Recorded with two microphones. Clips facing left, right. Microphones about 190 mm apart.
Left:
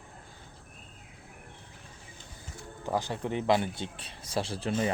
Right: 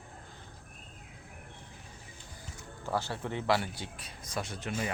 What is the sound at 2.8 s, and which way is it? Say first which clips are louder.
Speech: left 3 dB; 15° left (ahead or behind).